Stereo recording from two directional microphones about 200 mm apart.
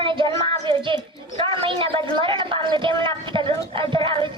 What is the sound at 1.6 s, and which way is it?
A woman's voice, 25° right (ahead or behind).